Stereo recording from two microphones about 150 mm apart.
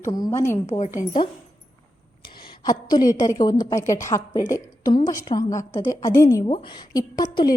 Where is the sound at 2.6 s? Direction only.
25° left (ahead or behind).